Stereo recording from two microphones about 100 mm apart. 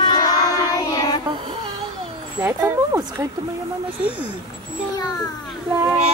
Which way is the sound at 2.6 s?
30° right (ahead or behind).